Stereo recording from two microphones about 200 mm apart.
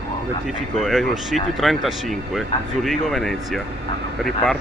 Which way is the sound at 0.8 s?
Centre (ahead or behind).